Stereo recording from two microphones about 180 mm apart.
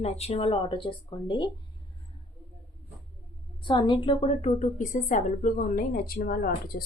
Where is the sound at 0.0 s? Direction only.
35° left (ahead or behind).